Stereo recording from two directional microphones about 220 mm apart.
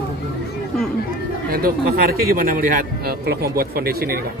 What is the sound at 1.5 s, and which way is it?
A man's voice, 40° right (ahead or behind).